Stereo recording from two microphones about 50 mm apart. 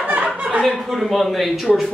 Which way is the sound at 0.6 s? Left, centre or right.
Centre.